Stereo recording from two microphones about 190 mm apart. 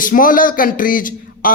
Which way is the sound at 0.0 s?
45° left (ahead or behind).